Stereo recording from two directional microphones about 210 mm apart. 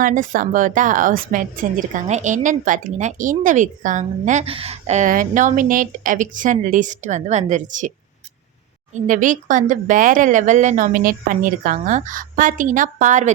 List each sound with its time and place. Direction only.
0.0 s a woman's voice: 40° right (ahead or behind)